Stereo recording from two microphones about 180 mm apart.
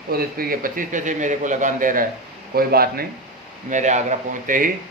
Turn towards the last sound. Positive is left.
turn(degrees=-50)  # may be behind; listen again after turning